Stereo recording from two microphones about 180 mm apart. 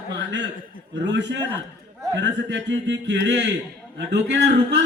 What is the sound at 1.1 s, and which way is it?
Speech, 85° right.